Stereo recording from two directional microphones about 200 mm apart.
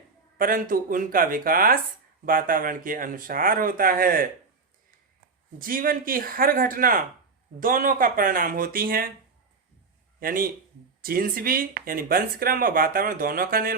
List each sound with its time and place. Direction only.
0.3 s speech: 45° right (ahead or behind)
5.5 s speech: 45° right (ahead or behind)
10.2 s speech: 45° right (ahead or behind)